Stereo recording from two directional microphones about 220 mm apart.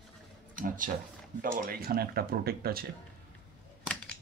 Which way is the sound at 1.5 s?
40° right (ahead or behind).